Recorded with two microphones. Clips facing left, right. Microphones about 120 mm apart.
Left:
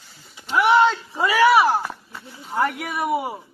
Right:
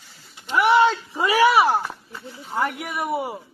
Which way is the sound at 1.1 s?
20° right (ahead or behind).